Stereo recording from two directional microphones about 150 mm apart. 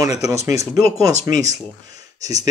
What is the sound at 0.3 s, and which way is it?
A man's voice, 20° right (ahead or behind).